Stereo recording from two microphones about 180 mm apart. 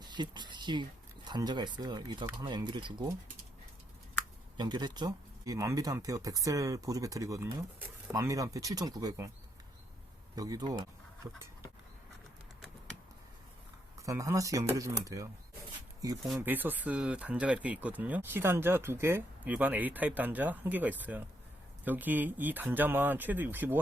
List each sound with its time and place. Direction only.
0.0 s speech: 25° right (ahead or behind)
4.5 s speech: 25° right (ahead or behind)
10.3 s speech: 20° right (ahead or behind)
13.9 s speech: 15° right (ahead or behind)